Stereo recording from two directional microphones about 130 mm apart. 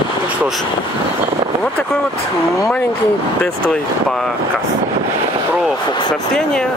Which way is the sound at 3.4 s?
5° left (ahead or behind).